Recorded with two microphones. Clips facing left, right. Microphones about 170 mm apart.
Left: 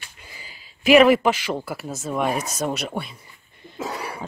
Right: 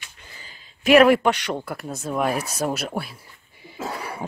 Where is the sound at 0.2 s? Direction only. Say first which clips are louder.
Left 2 dB; 10° left (ahead or behind).